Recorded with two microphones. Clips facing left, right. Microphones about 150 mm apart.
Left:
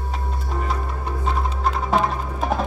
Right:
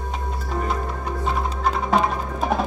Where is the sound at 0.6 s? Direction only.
Centre (ahead or behind).